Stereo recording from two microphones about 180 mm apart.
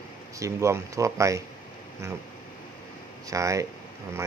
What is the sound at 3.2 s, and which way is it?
Speech, 15° right (ahead or behind).